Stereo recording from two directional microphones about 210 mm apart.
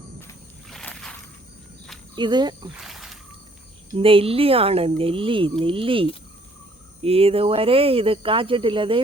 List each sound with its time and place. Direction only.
0.7 s rowboat: 5° left (ahead or behind)
2.1 s speech: 20° right (ahead or behind)
2.8 s wild animals: centre (ahead or behind)
3.9 s speech: 25° right (ahead or behind)